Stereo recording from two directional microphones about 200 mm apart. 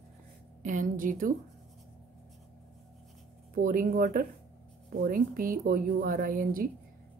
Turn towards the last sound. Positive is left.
turn(degrees=-45)  # may be behind; listen again after turning